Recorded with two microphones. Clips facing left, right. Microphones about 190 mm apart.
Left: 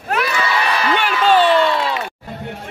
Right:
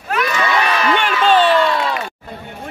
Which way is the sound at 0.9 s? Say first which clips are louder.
Even; 10° left (ahead or behind).